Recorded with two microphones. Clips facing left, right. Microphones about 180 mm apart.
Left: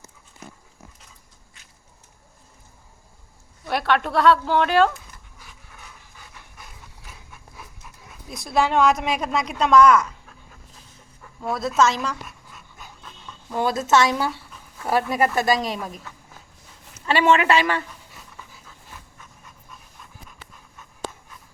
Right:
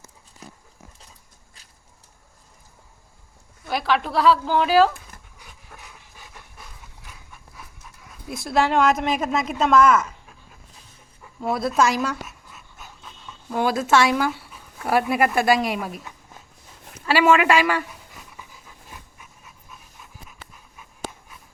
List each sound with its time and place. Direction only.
3.7 s a woman's voice: centre (ahead or behind)
5.7 s dog: 50° right (ahead or behind)
8.4 s a woman's voice: centre (ahead or behind)
11.2 s dog: 10° right (ahead or behind)
11.8 s speech: 10° right (ahead or behind)
12.5 s dog: centre (ahead or behind)
13.5 s speech: 10° right (ahead or behind)
19.2 s dog: 5° right (ahead or behind)